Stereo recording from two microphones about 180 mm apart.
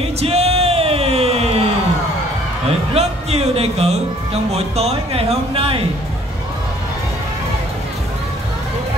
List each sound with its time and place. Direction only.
0.2 s music: 35° right (ahead or behind)
2.9 s speech: 35° right (ahead or behind)